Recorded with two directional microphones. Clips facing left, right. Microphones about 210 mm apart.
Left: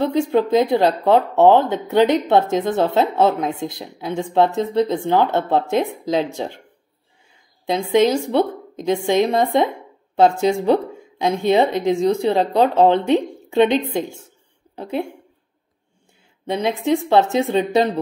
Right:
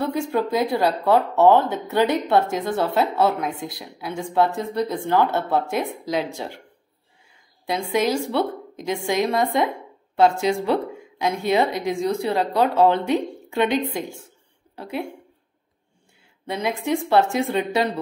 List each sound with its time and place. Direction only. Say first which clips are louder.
0.0 s speech: left 5 dB; 20° left (ahead or behind)
7.6 s speech: left 6 dB; 25° left (ahead or behind)
11.1 s speech: left 4 dB; 25° left (ahead or behind)
16.4 s speech: left 5 dB; 25° left (ahead or behind)